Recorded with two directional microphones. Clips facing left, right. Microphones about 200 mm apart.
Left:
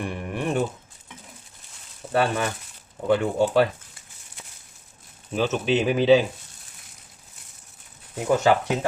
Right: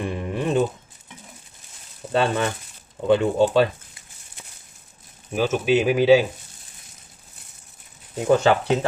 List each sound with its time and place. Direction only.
0.0 s a sound: 20° right (ahead or behind)
2.1 s speech: 25° right (ahead or behind)
5.3 s speech: 10° right (ahead or behind)
8.3 s speech: 25° right (ahead or behind)